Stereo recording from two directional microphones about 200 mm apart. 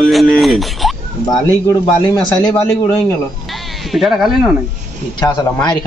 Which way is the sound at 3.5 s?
Centre (ahead or behind).